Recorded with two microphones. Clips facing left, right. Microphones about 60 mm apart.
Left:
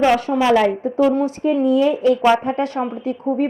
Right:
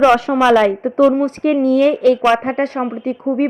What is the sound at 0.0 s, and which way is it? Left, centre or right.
A woman's voice, right.